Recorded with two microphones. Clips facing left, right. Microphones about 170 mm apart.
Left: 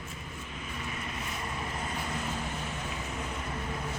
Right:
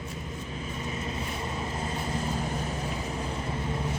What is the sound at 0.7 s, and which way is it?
Vehicle, 30° right (ahead or behind).